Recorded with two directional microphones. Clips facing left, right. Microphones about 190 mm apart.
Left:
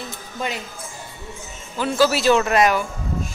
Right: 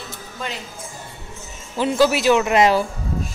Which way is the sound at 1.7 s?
20° right (ahead or behind).